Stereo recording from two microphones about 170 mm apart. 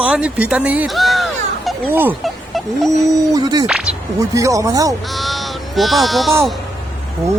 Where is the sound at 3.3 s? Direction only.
25° right (ahead or behind).